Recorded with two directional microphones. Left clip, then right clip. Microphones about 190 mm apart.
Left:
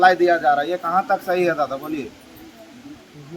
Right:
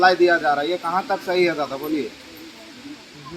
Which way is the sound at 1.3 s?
30° left (ahead or behind).